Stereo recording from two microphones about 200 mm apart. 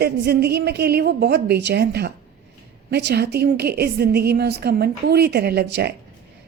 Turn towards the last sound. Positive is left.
turn(degrees=-55)  # may be behind; listen again after turning